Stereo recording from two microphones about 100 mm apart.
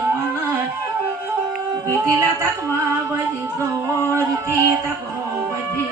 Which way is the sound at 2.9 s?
30° right (ahead or behind).